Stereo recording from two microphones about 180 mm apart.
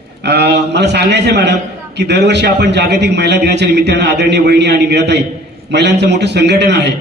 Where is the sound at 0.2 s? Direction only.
70° right (ahead or behind).